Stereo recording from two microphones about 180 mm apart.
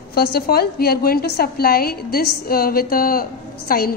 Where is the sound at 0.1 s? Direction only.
60° left (ahead or behind).